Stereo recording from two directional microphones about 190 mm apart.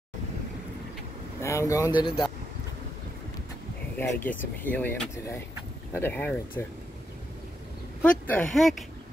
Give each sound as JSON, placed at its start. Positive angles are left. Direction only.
{"t": 1.4, "sound": "speech", "side_deg": 15}
{"t": 4.0, "sound": "speech", "side_deg": 10}
{"t": 8.0, "sound": "speech", "side_deg": 5}